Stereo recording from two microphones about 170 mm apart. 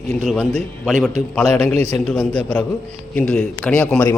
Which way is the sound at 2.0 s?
5° left (ahead or behind).